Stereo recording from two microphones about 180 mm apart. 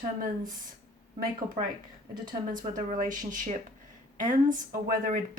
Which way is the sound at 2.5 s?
45° right (ahead or behind).